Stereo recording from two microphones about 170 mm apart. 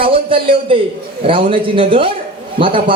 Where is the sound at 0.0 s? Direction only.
30° right (ahead or behind).